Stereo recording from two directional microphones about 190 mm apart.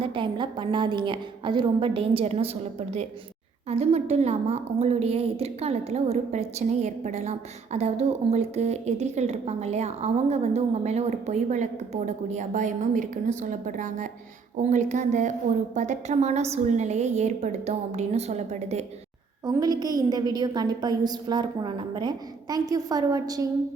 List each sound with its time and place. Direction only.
0.0 s a woman's voice: 25° right (ahead or behind)
3.7 s a woman's voice: 35° right (ahead or behind)
19.5 s a woman's voice: 20° right (ahead or behind)